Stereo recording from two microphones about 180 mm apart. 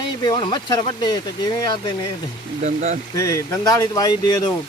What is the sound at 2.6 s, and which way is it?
Speech, 40° right (ahead or behind).